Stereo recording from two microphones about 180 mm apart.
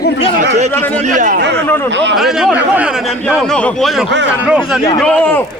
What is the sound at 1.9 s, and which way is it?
Speech, 85° right.